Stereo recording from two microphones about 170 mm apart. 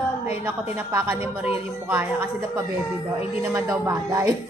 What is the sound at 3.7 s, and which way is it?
Speech, 20° right (ahead or behind).